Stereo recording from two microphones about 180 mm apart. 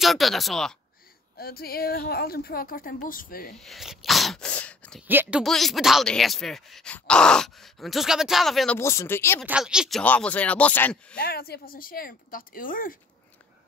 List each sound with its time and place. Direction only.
0.0 s speech: centre (ahead or behind)
1.4 s a woman's voice: 55° left (ahead or behind)
3.5 s speech: centre (ahead or behind)
5.0 s speech: 10° right (ahead or behind)
5.4 s speech: centre (ahead or behind)
8.7 s speech: 15° left (ahead or behind)
9.4 s speech: 5° right (ahead or behind)
11.1 s speech: 60° left (ahead or behind)